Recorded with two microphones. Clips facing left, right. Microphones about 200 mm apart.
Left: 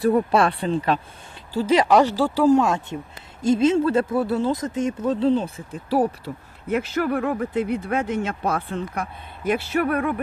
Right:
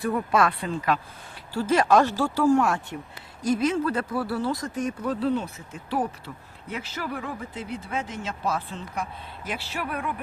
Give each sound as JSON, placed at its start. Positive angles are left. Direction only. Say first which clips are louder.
{"t": 0.0, "sound": "speech", "louder": "left 5 dB", "side_deg": 35}
{"t": 1.5, "sound": "speech", "louder": "left 3 dB", "side_deg": 15}
{"t": 6.7, "sound": "speech", "louder": "left 10 dB", "side_deg": 55}